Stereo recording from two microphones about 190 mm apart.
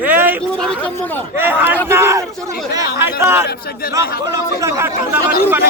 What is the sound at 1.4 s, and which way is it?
Speech, 10° right (ahead or behind).